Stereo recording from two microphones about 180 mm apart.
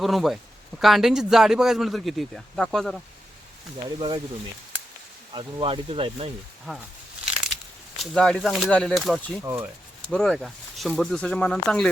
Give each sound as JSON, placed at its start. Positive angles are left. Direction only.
{"t": 0.0, "sound": "a man's voice", "side_deg": 0}
{"t": 3.8, "sound": "speech", "side_deg": -25}
{"t": 5.3, "sound": "speech", "side_deg": -30}
{"t": 7.9, "sound": "a man's voice", "side_deg": 5}
{"t": 9.4, "sound": "speech", "side_deg": -15}
{"t": 10.1, "sound": "a man's voice", "side_deg": 0}